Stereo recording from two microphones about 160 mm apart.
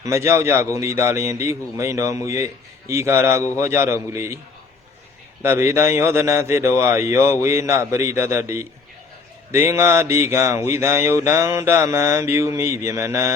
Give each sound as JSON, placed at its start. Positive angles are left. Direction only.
{"t": 0.0, "sound": "speech", "side_deg": -15}
{"t": 5.4, "sound": "speech", "side_deg": -15}